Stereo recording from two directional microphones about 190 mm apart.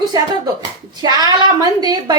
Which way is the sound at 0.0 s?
20° right (ahead or behind).